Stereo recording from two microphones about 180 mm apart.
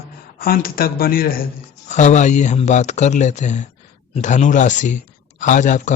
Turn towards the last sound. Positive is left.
turn(degrees=45)  # may be behind; listen again after turning